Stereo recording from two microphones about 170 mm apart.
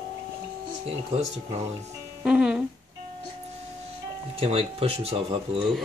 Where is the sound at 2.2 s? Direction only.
5° right (ahead or behind).